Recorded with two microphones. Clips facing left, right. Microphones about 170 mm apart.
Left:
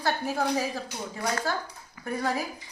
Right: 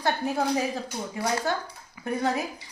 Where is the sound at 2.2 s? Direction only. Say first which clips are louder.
Right 2 dB; 25° right (ahead or behind).